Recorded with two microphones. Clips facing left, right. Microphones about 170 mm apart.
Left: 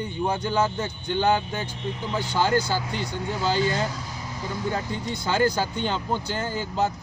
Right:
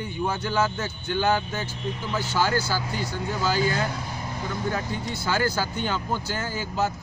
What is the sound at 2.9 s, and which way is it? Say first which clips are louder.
Speech: even; 5° right (ahead or behind).